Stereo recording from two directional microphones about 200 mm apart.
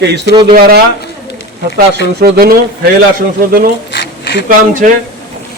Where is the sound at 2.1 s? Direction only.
55° right (ahead or behind).